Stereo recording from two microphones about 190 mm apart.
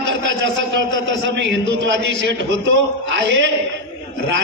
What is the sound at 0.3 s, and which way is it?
A man's voice, 70° right (ahead or behind).